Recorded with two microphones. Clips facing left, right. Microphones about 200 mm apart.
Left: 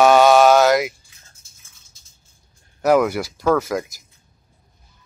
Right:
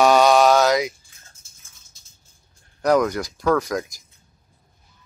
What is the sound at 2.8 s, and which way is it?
Speech, 5° left (ahead or behind).